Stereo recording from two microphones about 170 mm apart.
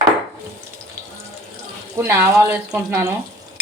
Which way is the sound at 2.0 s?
10° right (ahead or behind).